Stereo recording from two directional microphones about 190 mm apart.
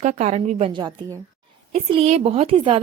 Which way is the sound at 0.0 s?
35° right (ahead or behind).